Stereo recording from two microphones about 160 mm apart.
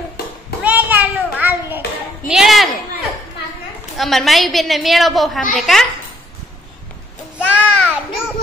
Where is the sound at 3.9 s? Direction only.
Centre (ahead or behind).